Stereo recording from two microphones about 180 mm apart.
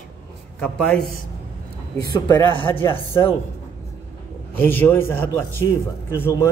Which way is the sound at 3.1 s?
15° left (ahead or behind).